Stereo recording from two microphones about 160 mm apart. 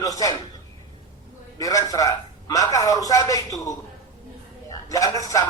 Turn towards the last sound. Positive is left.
turn(degrees=20)  # may be behind; listen again after turning